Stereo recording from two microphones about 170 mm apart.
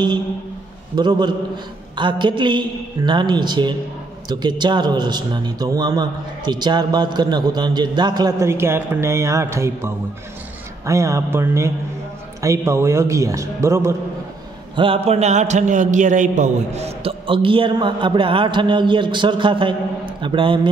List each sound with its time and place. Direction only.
0.9 s a man's voice: 25° right (ahead or behind)
14.8 s a man's voice: 35° right (ahead or behind)